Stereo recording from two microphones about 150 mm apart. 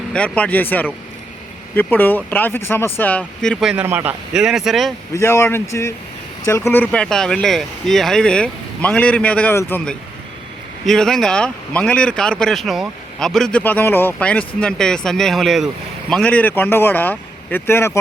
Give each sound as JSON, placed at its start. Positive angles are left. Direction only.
{"t": 0.1, "sound": "speech", "side_deg": 10}
{"t": 5.1, "sound": "speech", "side_deg": 15}